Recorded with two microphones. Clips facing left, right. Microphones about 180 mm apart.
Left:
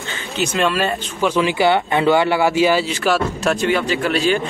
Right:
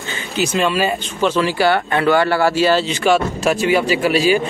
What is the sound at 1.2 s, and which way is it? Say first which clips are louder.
Speech: even; 15° left (ahead or behind).